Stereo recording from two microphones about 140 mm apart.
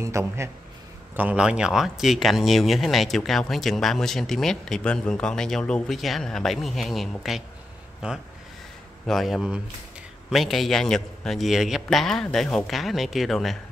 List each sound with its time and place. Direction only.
0.0 s a man's voice: 20° right (ahead or behind); by 13.6 s centre (ahead or behind)